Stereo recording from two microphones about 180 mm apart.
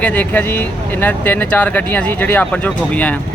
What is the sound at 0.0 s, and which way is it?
Speech, 10° left (ahead or behind).